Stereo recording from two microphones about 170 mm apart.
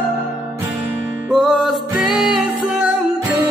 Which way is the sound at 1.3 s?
Centre (ahead or behind).